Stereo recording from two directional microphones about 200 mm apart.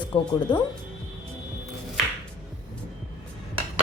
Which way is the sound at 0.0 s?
20° left (ahead or behind).